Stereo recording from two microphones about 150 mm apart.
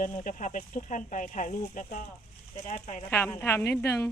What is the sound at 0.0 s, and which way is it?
Speech, 60° left (ahead or behind).